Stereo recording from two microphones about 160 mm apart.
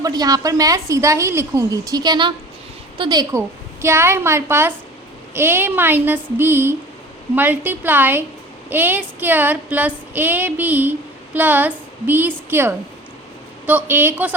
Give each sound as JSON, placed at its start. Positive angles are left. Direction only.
{"t": 0.0, "sound": "a woman's voice", "side_deg": -25}
{"t": 3.0, "sound": "female singing", "side_deg": -25}
{"t": 11.3, "sound": "a woman's voice", "side_deg": -10}
{"t": 13.7, "sound": "female singing", "side_deg": -10}